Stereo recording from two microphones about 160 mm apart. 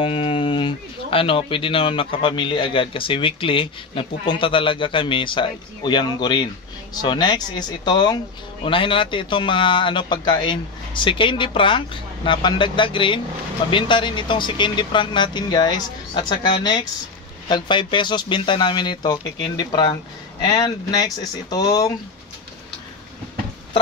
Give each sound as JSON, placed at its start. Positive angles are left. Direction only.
{"t": 0.0, "sound": "a man's voice", "side_deg": 35}